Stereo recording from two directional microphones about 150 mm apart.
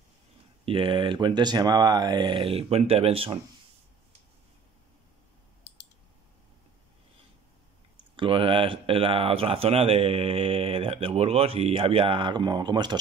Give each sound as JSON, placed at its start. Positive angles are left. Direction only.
{"t": 0.7, "sound": "speech", "side_deg": -35}
{"t": 8.2, "sound": "speech", "side_deg": -35}